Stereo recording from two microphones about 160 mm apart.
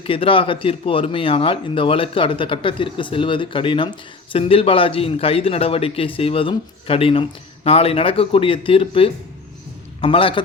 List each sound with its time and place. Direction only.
0.0 s a man's voice: 35° left (ahead or behind)